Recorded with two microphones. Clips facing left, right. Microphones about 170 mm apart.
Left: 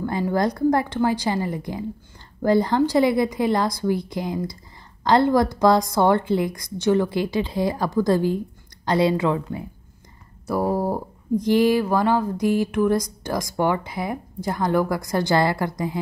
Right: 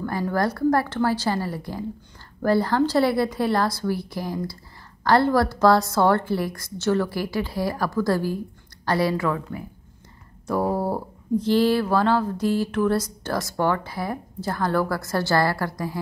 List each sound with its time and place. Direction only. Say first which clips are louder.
0.0 s a woman's voice: left 2 dB; 20° left (ahead or behind)
10.4 s speech: left 1 dB; 10° left (ahead or behind)